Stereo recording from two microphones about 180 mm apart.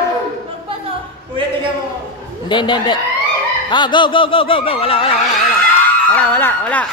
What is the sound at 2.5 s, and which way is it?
Speech, 25° left (ahead or behind).